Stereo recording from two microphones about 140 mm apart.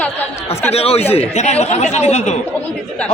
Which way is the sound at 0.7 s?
45° left (ahead or behind).